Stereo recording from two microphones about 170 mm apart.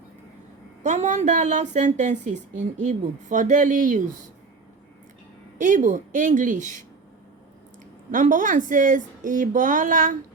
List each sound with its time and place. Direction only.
0.8 s a woman's voice: 45° right (ahead or behind)
5.5 s a woman's voice: 50° right (ahead or behind)
8.1 s a woman's voice: 50° right (ahead or behind)